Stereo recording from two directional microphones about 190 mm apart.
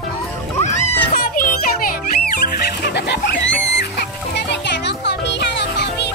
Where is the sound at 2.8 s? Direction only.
60° left (ahead or behind).